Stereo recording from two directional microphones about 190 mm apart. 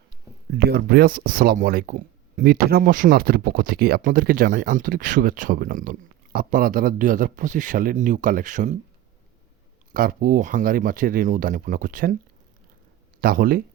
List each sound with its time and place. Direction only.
0.6 s speech: 55° right (ahead or behind)
9.9 s speech: 45° right (ahead or behind)
13.2 s speech: 50° right (ahead or behind)